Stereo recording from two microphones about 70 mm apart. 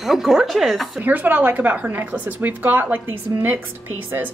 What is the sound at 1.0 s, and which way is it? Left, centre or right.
A woman's voice, right.